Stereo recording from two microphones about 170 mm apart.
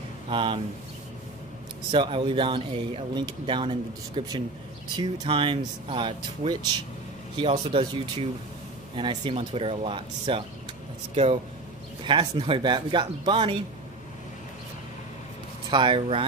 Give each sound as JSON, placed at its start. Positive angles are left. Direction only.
{"t": 0.3, "sound": "speech", "side_deg": -30}
{"t": 1.9, "sound": "speech", "side_deg": -30}
{"t": 12.0, "sound": "speech", "side_deg": -30}
{"t": 15.7, "sound": "speech", "side_deg": -30}